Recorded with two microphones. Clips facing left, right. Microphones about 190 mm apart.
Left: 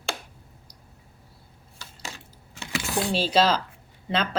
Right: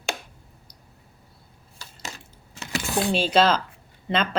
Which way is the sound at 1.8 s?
40° right (ahead or behind).